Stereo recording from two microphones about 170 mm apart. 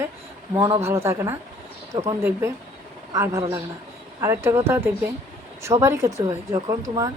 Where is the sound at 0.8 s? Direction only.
15° right (ahead or behind).